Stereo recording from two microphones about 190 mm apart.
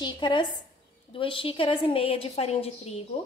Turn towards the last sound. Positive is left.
turn(degrees=30)  # may be behind; listen again after turning